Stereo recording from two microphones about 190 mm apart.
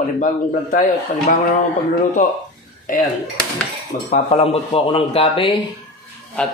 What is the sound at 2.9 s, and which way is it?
Speech, 45° left (ahead or behind).